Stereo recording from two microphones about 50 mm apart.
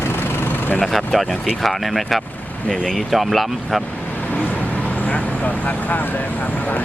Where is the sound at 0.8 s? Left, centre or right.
Centre.